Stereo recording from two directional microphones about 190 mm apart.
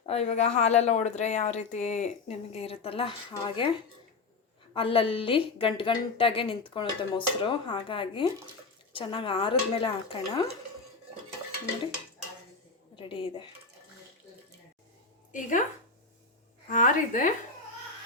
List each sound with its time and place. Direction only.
0.0 s speech: 35° left (ahead or behind)
4.7 s a woman's voice: 30° left (ahead or behind)
13.0 s a woman's voice: 25° left (ahead or behind)
15.3 s speech: 45° left (ahead or behind)
16.6 s a woman's voice: 40° left (ahead or behind)